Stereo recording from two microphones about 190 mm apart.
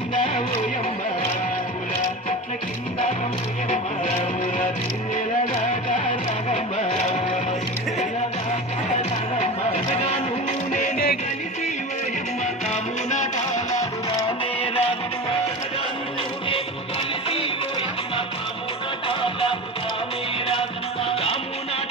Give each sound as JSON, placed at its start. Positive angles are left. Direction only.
{"t": 3.7, "sound": "music", "side_deg": 40}
{"t": 9.4, "sound": "music", "side_deg": 35}
{"t": 10.7, "sound": "music", "side_deg": 45}
{"t": 14.2, "sound": "music", "side_deg": 30}
{"t": 19.0, "sound": "music", "side_deg": 30}